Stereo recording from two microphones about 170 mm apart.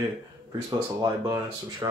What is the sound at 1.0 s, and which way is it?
Speech, 20° right (ahead or behind).